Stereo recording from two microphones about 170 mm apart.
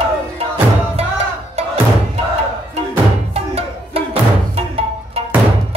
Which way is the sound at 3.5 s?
35° right (ahead or behind).